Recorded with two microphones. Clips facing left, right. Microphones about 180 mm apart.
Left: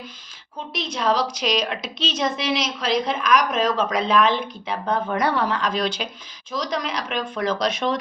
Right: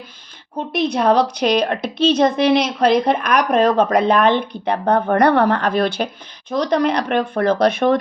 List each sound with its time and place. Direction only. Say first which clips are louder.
0.7 s speech: right 7 dB; 60° right (ahead or behind)